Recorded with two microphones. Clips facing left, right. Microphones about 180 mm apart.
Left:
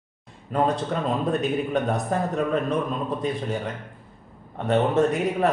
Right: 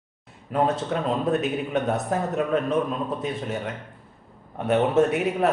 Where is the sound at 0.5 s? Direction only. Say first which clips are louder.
Even; 5° right (ahead or behind).